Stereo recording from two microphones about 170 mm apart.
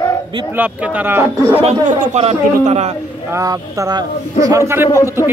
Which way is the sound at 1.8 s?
40° right (ahead or behind).